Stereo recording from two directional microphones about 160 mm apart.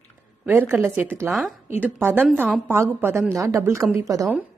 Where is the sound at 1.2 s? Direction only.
Centre (ahead or behind).